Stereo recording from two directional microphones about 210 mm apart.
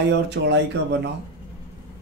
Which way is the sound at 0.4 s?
65° right (ahead or behind).